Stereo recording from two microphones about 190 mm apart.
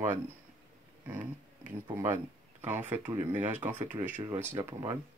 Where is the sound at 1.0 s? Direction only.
10° right (ahead or behind).